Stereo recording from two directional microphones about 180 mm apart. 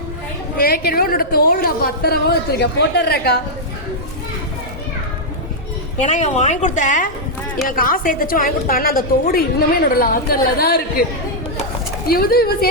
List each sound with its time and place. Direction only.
0.5 s a woman's voice: 55° left (ahead or behind)
6.0 s a woman's voice: 40° left (ahead or behind); by 11.0 s 55° left (ahead or behind)
12.0 s a woman's voice: 60° left (ahead or behind)